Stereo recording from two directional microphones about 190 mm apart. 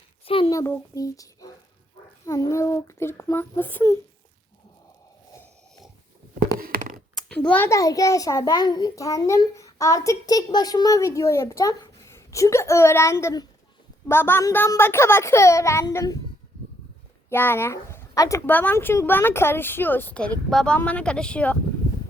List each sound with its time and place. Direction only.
0.3 s a child's voice: 30° left (ahead or behind)
0.5 s a child's voice: 15° left (ahead or behind)
5.3 s a sound: 15° left (ahead or behind)
6.6 s a sound: 50° right (ahead or behind)
7.2 s a child's voice: 5° left (ahead or behind)
17.2 s a child's voice: 10° left (ahead or behind)